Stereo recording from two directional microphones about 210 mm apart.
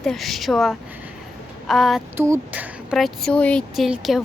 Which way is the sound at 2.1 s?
10° right (ahead or behind).